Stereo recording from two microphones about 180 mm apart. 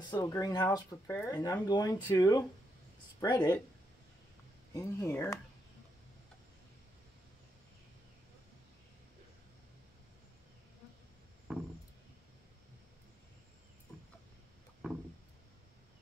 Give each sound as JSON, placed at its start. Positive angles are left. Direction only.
{"t": 0.1, "sound": "speech", "side_deg": 20}
{"t": 4.7, "sound": "speech", "side_deg": 15}
{"t": 11.5, "sound": "a sound", "side_deg": -5}